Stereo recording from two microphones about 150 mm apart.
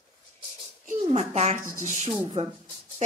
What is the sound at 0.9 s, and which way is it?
A child's voice, 50° right (ahead or behind).